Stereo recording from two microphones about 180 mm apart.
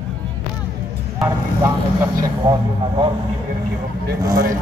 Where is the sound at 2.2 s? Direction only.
20° right (ahead or behind).